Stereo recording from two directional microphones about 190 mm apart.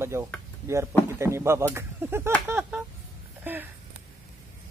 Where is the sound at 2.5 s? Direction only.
10° right (ahead or behind).